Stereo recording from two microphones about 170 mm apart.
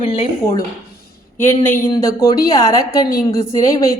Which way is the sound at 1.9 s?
20° left (ahead or behind).